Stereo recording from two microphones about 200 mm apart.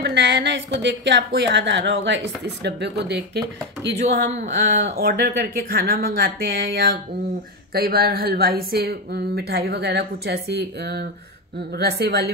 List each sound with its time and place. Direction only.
0.0 s a woman's voice: 60° right (ahead or behind)
4.5 s speech: 50° right (ahead or behind)